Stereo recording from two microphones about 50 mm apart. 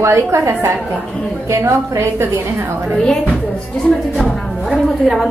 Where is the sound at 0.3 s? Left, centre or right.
Right.